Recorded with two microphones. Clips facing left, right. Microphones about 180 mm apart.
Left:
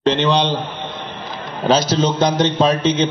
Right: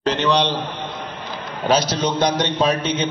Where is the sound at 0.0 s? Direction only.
25° left (ahead or behind).